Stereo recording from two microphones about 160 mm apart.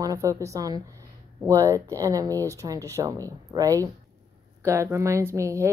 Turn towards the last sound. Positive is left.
turn(degrees=-20)  # may be behind; listen again after turning